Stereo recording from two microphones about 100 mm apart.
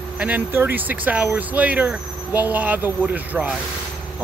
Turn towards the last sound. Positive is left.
turn(degrees=-15)  # may be behind; listen again after turning